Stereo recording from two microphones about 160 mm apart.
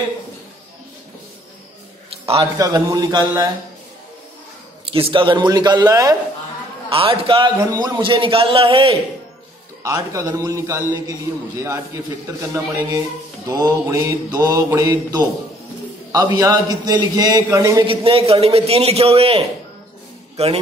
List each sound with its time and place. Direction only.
2.5 s a man's voice: 20° right (ahead or behind)
4.9 s a man's voice: 35° right (ahead or behind)
6.9 s a man's voice: 35° right (ahead or behind)
9.8 s a man's voice: 20° right (ahead or behind)
17.8 s a man's voice: 35° right (ahead or behind)